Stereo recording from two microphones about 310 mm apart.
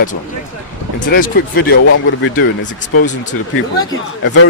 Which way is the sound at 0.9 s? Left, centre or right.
Left.